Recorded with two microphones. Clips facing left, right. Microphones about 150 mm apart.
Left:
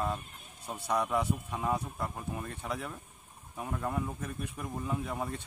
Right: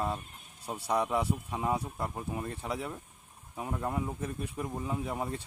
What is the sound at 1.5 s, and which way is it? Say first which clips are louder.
Speech: right 1 dB; 15° right (ahead or behind).